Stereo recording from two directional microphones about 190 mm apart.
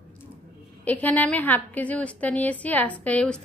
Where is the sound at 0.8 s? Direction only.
10° left (ahead or behind).